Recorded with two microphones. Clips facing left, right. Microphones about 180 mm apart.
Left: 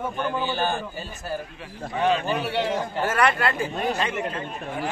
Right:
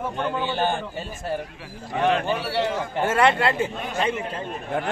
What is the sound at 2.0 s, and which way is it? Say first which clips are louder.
Speech: right 1 dB; 70° right (ahead or behind).